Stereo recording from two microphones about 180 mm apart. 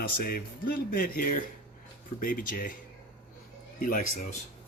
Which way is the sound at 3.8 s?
45° left (ahead or behind).